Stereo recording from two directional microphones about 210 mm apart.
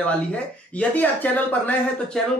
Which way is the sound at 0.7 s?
10° left (ahead or behind).